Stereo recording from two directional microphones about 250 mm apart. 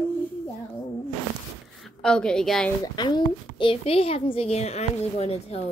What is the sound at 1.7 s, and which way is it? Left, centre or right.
Speech, centre.